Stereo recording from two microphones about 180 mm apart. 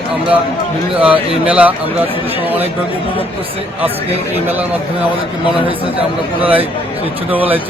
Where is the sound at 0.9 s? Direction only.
30° right (ahead or behind).